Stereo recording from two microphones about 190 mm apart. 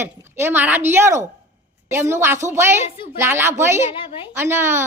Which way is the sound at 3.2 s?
10° right (ahead or behind).